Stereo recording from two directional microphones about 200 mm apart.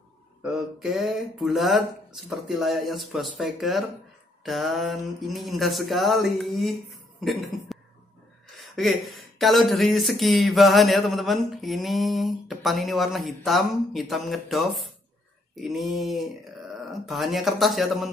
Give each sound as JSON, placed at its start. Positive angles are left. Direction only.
{"t": 0.4, "sound": "speech", "side_deg": -5}